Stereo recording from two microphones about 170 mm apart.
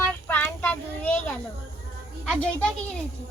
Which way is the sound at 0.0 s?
10° left (ahead or behind).